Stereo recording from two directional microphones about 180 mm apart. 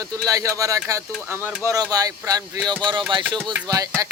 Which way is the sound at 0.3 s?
20° right (ahead or behind).